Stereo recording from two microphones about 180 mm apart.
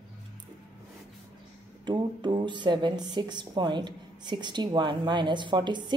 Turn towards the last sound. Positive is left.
turn(degrees=-25)  # may be behind; listen again after turning